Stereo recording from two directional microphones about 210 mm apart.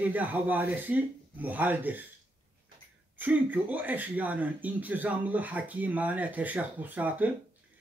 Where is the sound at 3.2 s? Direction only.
10° right (ahead or behind).